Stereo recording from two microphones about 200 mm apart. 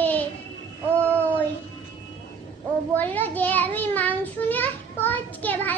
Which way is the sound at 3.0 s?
10° left (ahead or behind).